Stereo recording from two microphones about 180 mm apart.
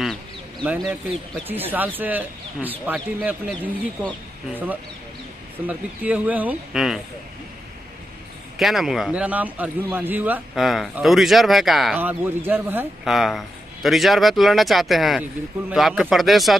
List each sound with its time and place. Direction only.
0.0 s a sound: centre (ahead or behind)
0.7 s speech: 5° right (ahead or behind)
5.7 s speech: 10° right (ahead or behind)
8.5 s speech: centre (ahead or behind)